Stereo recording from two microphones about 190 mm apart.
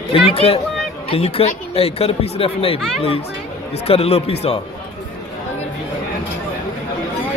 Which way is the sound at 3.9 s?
30° left (ahead or behind).